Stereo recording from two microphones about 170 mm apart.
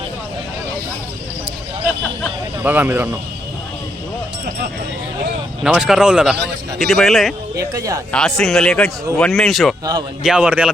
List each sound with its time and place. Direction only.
2.6 s speech: 10° right (ahead or behind)
5.6 s speech: 5° right (ahead or behind)
7.7 s speech: 20° right (ahead or behind)
8.1 s speech: 5° left (ahead or behind)